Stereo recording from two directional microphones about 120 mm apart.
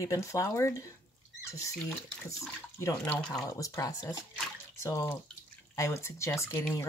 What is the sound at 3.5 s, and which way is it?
Speech, 25° left (ahead or behind).